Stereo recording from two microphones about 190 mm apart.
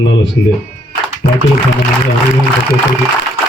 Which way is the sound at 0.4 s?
65° left (ahead or behind).